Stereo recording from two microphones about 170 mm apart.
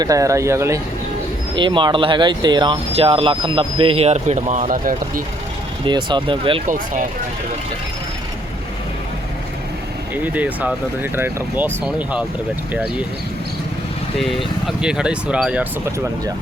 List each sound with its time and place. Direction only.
0.0 s speech: 20° right (ahead or behind)
1.5 s speech: 30° right (ahead or behind); by 5.2 s 55° right (ahead or behind)
5.8 s speech: 25° right (ahead or behind)
6.7 s speech: 50° right (ahead or behind)
10.2 s speech: 10° right (ahead or behind)
14.8 s speech: 5° right (ahead or behind)